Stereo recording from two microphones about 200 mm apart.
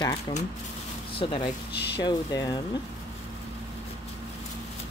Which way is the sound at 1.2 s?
25° left (ahead or behind).